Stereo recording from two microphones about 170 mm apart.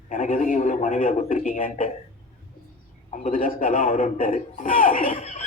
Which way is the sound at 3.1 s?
50° left (ahead or behind).